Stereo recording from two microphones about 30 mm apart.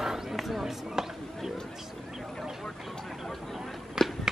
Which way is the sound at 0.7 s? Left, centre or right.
Centre.